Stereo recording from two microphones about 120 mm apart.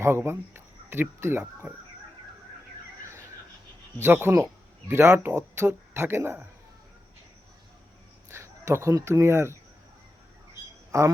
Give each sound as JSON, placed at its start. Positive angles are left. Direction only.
{"t": 0.0, "sound": "speech", "side_deg": -20}
{"t": 4.0, "sound": "speech", "side_deg": -20}
{"t": 8.3, "sound": "speech", "side_deg": -20}
{"t": 10.9, "sound": "speech", "side_deg": -25}